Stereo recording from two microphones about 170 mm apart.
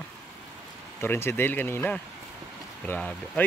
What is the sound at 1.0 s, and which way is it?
Speech, 15° left (ahead or behind).